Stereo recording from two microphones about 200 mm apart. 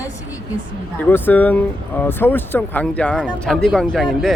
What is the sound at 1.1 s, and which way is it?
Speech, 10° left (ahead or behind).